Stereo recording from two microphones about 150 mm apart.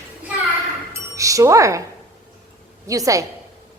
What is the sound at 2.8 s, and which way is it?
Speech, 20° right (ahead or behind).